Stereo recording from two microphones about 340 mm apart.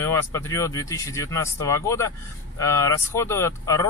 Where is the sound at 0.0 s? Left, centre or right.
Centre.